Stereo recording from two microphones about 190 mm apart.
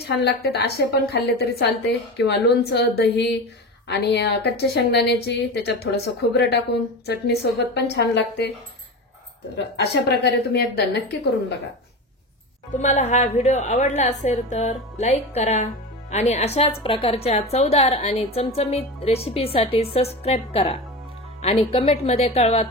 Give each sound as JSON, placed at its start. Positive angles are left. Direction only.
{"t": 0.0, "sound": "a woman's voice", "side_deg": 60}
{"t": 9.8, "sound": "a woman's voice", "side_deg": 60}
{"t": 12.7, "sound": "a woman's voice", "side_deg": 40}